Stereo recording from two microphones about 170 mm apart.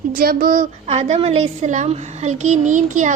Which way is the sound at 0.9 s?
40° right (ahead or behind).